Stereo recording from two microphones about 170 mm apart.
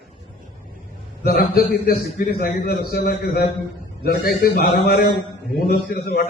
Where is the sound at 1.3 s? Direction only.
60° left (ahead or behind).